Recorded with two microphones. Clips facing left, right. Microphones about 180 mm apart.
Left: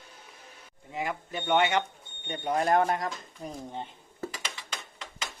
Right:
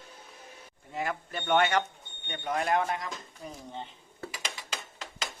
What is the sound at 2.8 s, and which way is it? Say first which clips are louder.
Speech: left 4 dB; 45° left (ahead or behind).